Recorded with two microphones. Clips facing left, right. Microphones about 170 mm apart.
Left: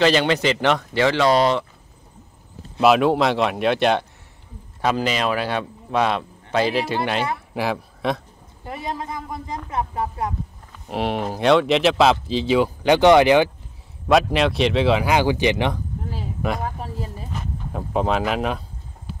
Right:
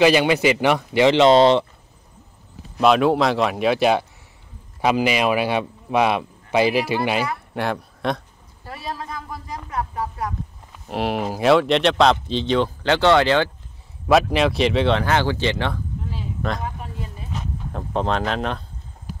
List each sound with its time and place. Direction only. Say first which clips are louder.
0.0 s a man's voice: right 2 dB; 10° right (ahead or behind)
2.8 s a man's voice: even; centre (ahead or behind)
7.3 s speech: even; centre (ahead or behind)
8.6 s speech: left 2 dB; 20° left (ahead or behind)
10.9 s a man's voice: even; centre (ahead or behind); by 13.5 s 15° left (ahead or behind)
14.0 s speech: even; centre (ahead or behind); by 15.8 s 15° left (ahead or behind)
16.6 s speech: left 2 dB; 35° left (ahead or behind)
17.3 s speech: even; 5° left (ahead or behind)